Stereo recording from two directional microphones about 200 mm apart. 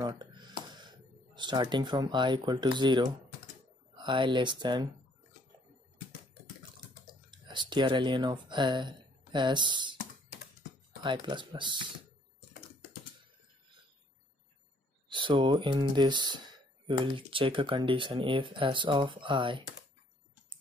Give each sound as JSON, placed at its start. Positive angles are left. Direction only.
{"t": 0.0, "sound": "speech", "side_deg": -20}
{"t": 7.2, "sound": "speech", "side_deg": -25}
{"t": 11.0, "sound": "speech", "side_deg": -25}
{"t": 15.0, "sound": "speech", "side_deg": -25}